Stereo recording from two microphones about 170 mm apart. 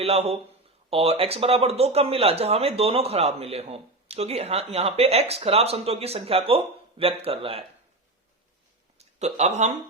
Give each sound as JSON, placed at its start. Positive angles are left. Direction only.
{"t": 0.0, "sound": "speech", "side_deg": -35}
{"t": 9.0, "sound": "speech", "side_deg": -40}